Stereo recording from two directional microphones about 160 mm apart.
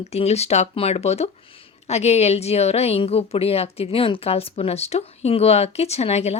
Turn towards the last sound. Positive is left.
turn(degrees=40)  # may be behind; listen again after turning